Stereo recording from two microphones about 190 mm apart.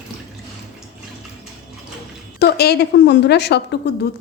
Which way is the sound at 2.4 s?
55° left (ahead or behind).